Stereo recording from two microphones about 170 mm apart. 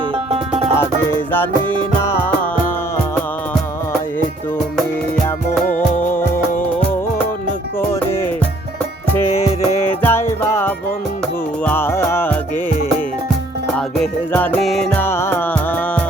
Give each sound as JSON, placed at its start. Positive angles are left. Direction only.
{"t": 0.3, "sound": "music", "side_deg": -35}
{"t": 5.6, "sound": "music", "side_deg": 50}
{"t": 9.2, "sound": "music", "side_deg": 35}
{"t": 10.0, "sound": "music", "side_deg": 15}
{"t": 13.7, "sound": "music", "side_deg": 5}